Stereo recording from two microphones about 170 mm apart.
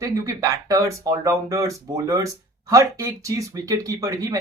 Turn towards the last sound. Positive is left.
turn(degrees=-20)  # may be behind; listen again after turning